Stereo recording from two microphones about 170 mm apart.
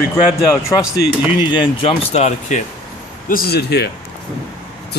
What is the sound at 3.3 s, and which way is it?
Speech, 70° left (ahead or behind).